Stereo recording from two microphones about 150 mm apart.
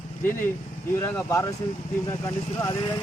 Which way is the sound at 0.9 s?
15° left (ahead or behind).